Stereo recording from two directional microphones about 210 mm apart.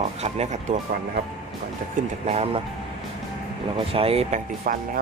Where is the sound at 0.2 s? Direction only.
35° right (ahead or behind).